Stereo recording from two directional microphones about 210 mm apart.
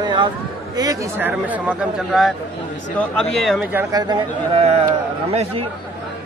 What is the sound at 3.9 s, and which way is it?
Speech, 20° right (ahead or behind).